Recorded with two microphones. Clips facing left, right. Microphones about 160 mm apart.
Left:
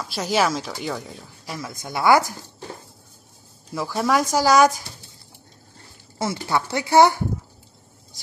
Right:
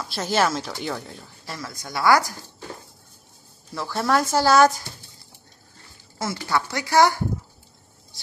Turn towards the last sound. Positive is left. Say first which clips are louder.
# left 3 dB
turn(degrees=20)  # may be behind; listen again after turning